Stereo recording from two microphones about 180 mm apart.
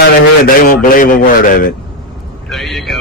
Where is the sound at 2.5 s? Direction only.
Centre (ahead or behind).